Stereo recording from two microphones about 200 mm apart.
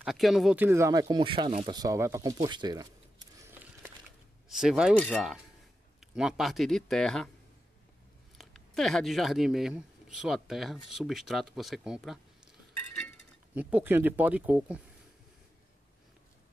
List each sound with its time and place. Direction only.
0.0 s speech: centre (ahead or behind); by 2.9 s 20° right (ahead or behind)
3.3 s a sound: 10° right (ahead or behind)
4.5 s speech: 5° right (ahead or behind)
8.4 s speech: centre (ahead or behind)
13.6 s speech: 5° right (ahead or behind)